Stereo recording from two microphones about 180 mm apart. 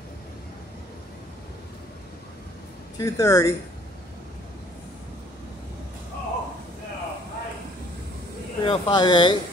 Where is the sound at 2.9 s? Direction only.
20° left (ahead or behind).